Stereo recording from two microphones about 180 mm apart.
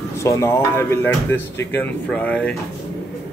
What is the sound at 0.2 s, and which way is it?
Speech, 15° left (ahead or behind).